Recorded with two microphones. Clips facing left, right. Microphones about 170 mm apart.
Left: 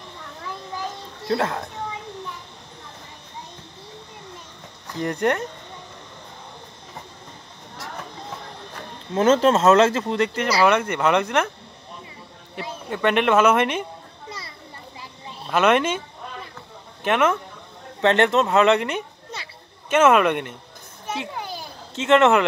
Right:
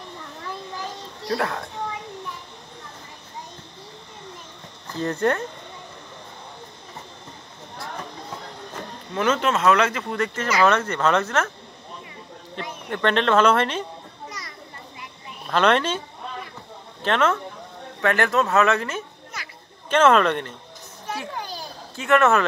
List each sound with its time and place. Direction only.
1.2 s speech: 25° left (ahead or behind)
4.9 s speech: 15° left (ahead or behind)
9.1 s speech: 30° left (ahead or behind); by 11.5 s 15° left (ahead or behind)
12.9 s speech: 10° left (ahead or behind)
15.5 s speech: 10° left (ahead or behind)
17.0 s speech: 10° left (ahead or behind)
18.0 s speech: 25° left (ahead or behind)
21.1 s children playing: 20° left (ahead or behind)
21.9 s speech: 20° left (ahead or behind)